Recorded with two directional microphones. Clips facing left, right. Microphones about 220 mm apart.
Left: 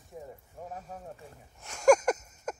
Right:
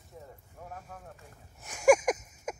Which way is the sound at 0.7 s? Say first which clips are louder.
Left 4 dB; 35° left (ahead or behind).